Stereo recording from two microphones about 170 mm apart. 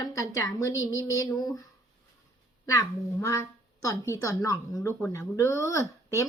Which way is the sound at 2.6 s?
20° left (ahead or behind).